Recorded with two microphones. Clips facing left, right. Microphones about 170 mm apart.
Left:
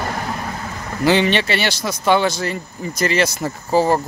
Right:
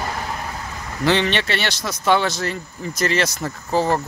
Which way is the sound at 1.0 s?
5° left (ahead or behind).